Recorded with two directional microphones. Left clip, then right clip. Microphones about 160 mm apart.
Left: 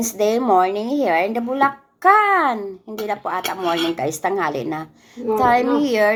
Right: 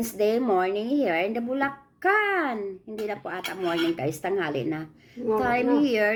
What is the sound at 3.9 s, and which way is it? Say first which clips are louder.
Speech: left 6 dB; 15° right (ahead or behind).